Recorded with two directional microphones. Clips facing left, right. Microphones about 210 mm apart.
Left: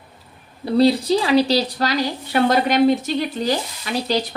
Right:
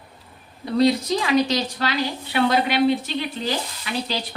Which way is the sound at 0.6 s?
35° left (ahead or behind).